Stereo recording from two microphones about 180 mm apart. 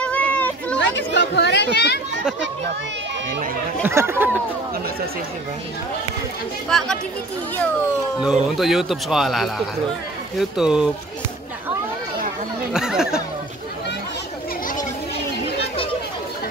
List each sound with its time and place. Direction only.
0.0 s a sound: 5° left (ahead or behind)
0.7 s speech: 80° left
3.8 s speech: 15° right (ahead or behind)
8.2 s speech: 5° right (ahead or behind)
10.6 s speech: 5° right (ahead or behind)
12.7 s speech: 5° right (ahead or behind)